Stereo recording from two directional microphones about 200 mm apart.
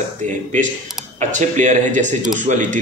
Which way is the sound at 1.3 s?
40° right (ahead or behind).